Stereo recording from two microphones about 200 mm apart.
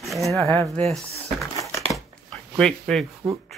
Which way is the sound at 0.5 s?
Centre (ahead or behind).